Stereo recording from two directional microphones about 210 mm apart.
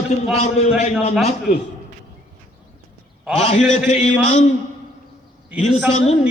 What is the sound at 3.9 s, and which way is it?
Speech, 30° left (ahead or behind).